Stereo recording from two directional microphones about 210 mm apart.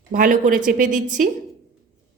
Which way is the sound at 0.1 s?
40° right (ahead or behind).